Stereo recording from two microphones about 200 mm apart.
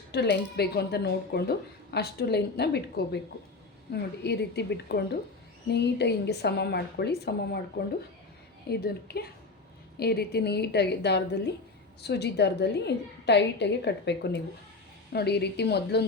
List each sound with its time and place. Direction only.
0.1 s speech: 55° left (ahead or behind)
8.7 s a woman's voice: 50° left (ahead or behind)